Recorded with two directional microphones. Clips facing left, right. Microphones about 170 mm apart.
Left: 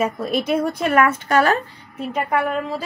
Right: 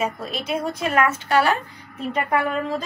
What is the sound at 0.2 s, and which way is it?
Speech, 55° left (ahead or behind).